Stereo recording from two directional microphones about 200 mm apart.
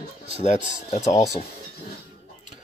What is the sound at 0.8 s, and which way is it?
Speech, 35° left (ahead or behind).